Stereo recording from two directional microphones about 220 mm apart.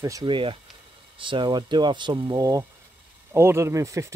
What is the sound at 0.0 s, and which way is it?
Speech, 20° right (ahead or behind).